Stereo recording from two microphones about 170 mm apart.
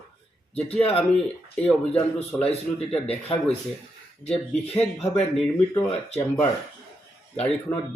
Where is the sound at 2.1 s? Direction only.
35° left (ahead or behind).